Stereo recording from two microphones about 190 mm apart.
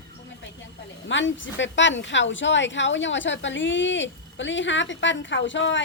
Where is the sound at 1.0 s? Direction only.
75° left (ahead or behind).